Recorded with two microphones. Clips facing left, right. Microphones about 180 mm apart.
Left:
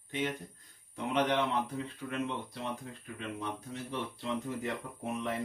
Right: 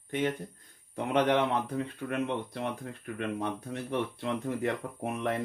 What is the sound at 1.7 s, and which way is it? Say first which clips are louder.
Speech: right 5 dB; 60° right (ahead or behind).